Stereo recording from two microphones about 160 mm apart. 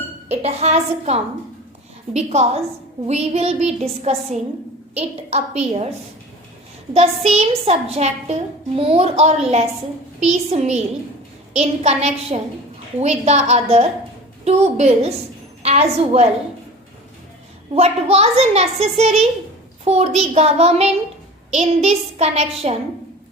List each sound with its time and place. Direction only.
0.3 s a child's voice: 40° right (ahead or behind)
3.1 s a sound: 40° right (ahead or behind)
4.9 s a child's voice: 40° right (ahead or behind)
6.9 s a child's voice: 40° right (ahead or behind)
10.2 s a sound: 45° right (ahead or behind)
11.5 s a child's voice: 40° right (ahead or behind)
13.0 s a sound: 45° right (ahead or behind)
14.4 s a child's voice: 40° right (ahead or behind)
17.7 s a child's voice: 40° right (ahead or behind)